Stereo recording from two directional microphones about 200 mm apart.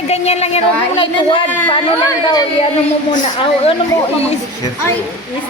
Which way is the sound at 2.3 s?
20° left (ahead or behind).